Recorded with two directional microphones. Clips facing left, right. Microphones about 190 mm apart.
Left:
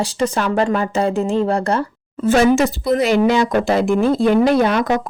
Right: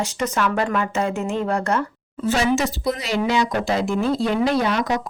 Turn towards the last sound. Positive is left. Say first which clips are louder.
# left 5 dB
turn(degrees=55)  # may be behind; listen again after turning